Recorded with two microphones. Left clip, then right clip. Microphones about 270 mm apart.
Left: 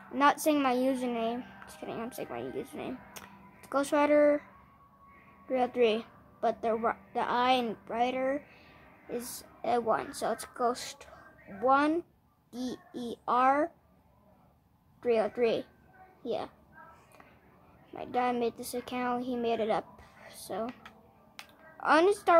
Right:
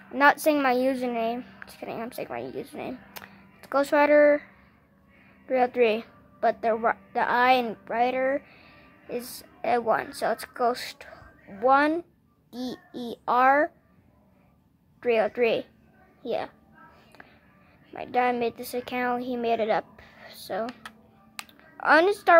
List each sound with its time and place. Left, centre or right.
0.1 s a woman's voice: centre
5.5 s a woman's voice: centre
15.0 s a woman's voice: centre
17.9 s a woman's voice: centre
21.7 s a woman's voice: centre